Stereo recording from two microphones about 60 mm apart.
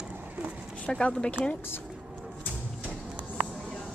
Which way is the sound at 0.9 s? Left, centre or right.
Centre.